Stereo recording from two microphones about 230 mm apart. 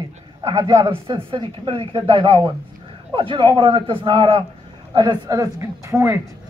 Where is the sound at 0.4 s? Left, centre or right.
Centre.